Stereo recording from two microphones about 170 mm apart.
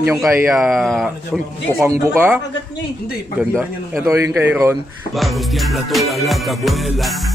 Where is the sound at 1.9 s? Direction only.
10° right (ahead or behind).